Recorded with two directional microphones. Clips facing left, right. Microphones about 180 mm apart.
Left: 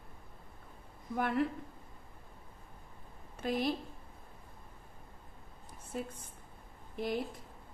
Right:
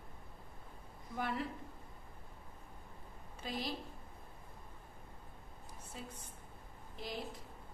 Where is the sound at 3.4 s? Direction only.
55° left (ahead or behind).